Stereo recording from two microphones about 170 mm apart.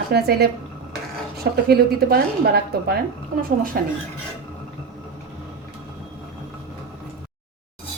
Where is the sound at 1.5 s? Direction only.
65° right (ahead or behind).